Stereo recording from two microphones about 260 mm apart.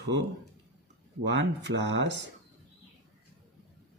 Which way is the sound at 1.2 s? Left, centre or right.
Right.